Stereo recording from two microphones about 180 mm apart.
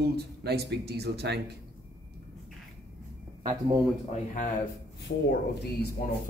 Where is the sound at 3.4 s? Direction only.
25° right (ahead or behind).